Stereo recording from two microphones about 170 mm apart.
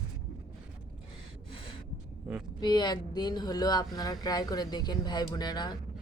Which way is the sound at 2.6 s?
25° left (ahead or behind).